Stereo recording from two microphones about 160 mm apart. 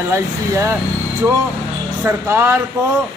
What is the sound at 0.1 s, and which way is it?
Speech, 15° right (ahead or behind).